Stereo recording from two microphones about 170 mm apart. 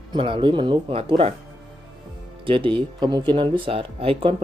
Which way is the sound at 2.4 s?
30° right (ahead or behind).